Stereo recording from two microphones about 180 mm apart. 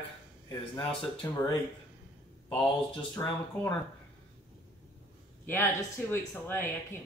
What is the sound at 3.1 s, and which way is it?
Speech, 20° left (ahead or behind).